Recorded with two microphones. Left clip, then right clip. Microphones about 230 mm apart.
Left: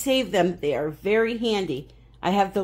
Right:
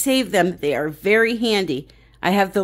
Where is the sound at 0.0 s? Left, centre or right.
Right.